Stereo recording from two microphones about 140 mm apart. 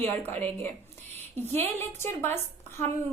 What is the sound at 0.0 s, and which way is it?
A woman's voice, 15° left (ahead or behind).